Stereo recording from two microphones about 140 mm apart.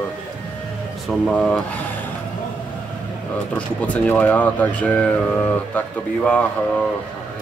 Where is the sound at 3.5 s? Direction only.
10° left (ahead or behind).